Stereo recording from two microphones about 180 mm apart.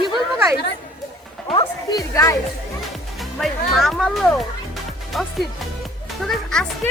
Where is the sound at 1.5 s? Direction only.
25° left (ahead or behind).